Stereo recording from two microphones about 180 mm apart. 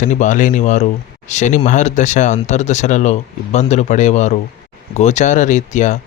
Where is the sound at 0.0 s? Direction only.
45° left (ahead or behind).